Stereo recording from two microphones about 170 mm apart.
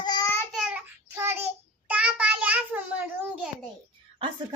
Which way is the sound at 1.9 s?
10° right (ahead or behind).